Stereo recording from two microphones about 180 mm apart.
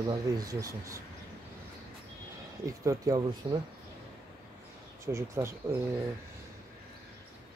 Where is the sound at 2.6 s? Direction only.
20° right (ahead or behind).